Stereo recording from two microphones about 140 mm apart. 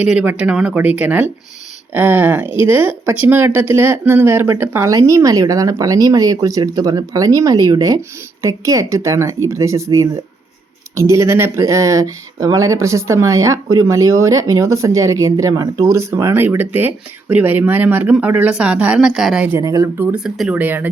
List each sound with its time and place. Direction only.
0.2 s speech: 10° right (ahead or behind)
20.1 s speech: 5° right (ahead or behind)